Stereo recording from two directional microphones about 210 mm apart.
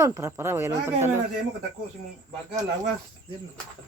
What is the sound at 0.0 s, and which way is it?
Speech, 15° right (ahead or behind).